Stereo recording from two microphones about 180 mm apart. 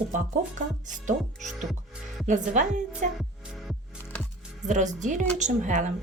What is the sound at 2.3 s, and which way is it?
Speech, 40° right (ahead or behind).